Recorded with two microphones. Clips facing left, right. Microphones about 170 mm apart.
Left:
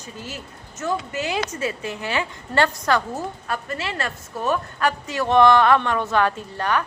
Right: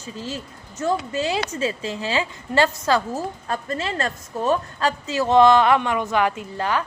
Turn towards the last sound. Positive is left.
turn(degrees=-20)  # may be behind; listen again after turning